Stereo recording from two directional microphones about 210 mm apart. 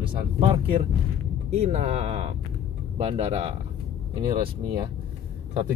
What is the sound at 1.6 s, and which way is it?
Speech, 30° right (ahead or behind).